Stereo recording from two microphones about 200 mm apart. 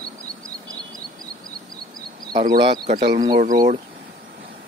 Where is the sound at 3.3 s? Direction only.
45° right (ahead or behind).